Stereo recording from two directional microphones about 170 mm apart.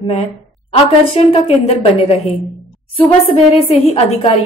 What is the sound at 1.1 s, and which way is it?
A woman's voice, 40° left (ahead or behind).